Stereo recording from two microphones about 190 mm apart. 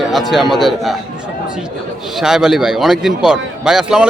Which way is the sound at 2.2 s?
5° right (ahead or behind).